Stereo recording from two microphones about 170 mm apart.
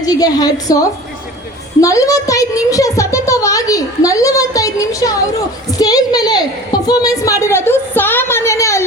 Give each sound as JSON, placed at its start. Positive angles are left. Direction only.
{"t": 0.0, "sound": "a child's voice", "side_deg": 20}